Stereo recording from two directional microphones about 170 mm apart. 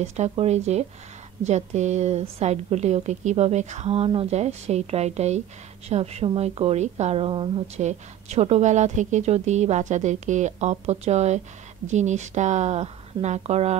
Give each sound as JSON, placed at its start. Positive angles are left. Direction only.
{"t": 0.0, "sound": "a woman's voice", "side_deg": -40}